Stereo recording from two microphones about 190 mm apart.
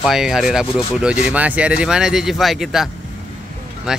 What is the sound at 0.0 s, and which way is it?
Speech, centre (ahead or behind).